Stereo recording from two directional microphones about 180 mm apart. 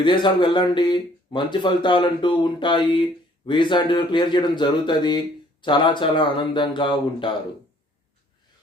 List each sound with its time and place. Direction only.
0.0 s speech: 25° left (ahead or behind)